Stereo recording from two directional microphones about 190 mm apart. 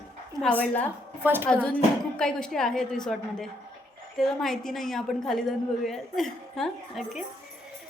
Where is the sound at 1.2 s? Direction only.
10° right (ahead or behind).